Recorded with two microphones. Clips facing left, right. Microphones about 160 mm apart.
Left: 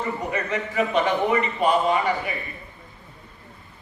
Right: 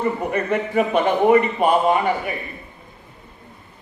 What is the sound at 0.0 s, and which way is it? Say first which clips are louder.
A man's voice: right 5 dB; 55° right (ahead or behind).